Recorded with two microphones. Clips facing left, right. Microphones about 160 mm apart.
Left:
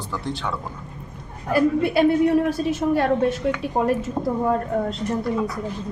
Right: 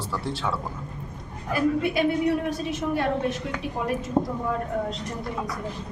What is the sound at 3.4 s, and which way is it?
Speech, 40° left (ahead or behind).